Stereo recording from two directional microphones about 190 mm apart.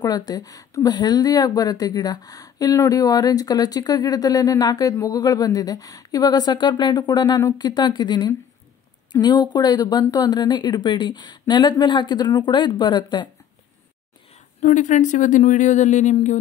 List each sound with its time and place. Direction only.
0.0 s a woman's voice: 20° left (ahead or behind)
14.6 s speech: 40° left (ahead or behind)